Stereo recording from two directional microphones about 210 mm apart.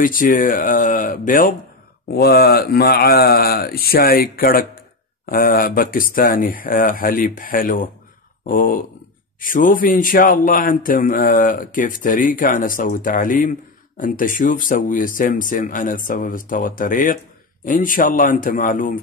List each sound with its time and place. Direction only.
0.0 s a man's voice: 40° left (ahead or behind)